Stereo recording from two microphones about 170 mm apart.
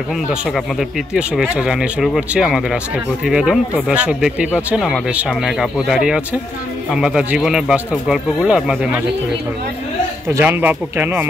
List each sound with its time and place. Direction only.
0.1 s speech: centre (ahead or behind)
10.2 s speech: 15° right (ahead or behind)